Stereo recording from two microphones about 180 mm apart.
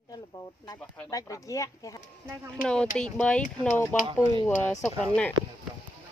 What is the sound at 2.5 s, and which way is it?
A woman's voice, 5° left (ahead or behind).